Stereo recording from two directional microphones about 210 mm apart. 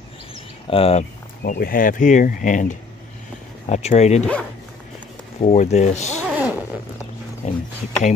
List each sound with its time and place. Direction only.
0.7 s speech: 25° left (ahead or behind)
1.4 s speech: 45° left (ahead or behind)
5.4 s speech: 30° left (ahead or behind)
6.2 s zipper: 5° right (ahead or behind)
7.4 s speech: 35° left (ahead or behind)